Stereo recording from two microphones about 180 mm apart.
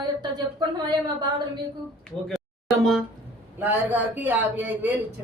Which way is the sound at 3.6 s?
10° right (ahead or behind).